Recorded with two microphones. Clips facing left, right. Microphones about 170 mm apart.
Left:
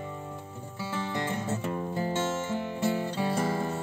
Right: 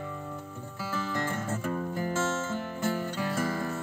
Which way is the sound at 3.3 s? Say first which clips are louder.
Left 1 dB; 25° left (ahead or behind).